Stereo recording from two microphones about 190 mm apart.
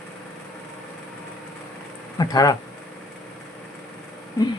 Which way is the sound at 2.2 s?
20° left (ahead or behind).